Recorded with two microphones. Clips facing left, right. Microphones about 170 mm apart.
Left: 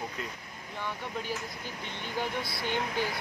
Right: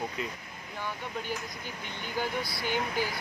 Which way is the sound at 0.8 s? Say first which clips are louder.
Even; 5° right (ahead or behind).